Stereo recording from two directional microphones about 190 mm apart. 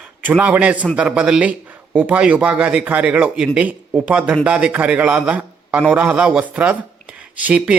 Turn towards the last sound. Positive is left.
turn(degrees=-5)  # may be behind; listen again after turning